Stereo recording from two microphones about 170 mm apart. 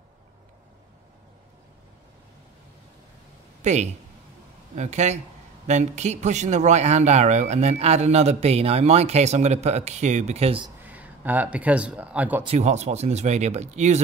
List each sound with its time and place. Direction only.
3.6 s speech: 45° right (ahead or behind)
10.8 s speech: 10° right (ahead or behind)
12.4 s speech: 40° right (ahead or behind)